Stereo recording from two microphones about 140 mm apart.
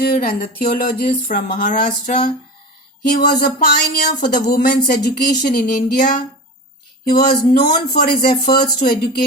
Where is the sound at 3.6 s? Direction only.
70° left (ahead or behind).